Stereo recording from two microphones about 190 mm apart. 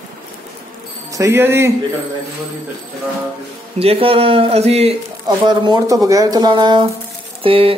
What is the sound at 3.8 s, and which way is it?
Speech, 30° right (ahead or behind).